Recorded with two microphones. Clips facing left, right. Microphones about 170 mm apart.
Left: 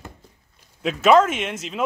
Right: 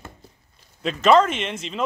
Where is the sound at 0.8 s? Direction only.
5° left (ahead or behind).